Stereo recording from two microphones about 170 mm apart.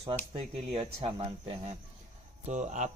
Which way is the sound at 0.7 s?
35° right (ahead or behind).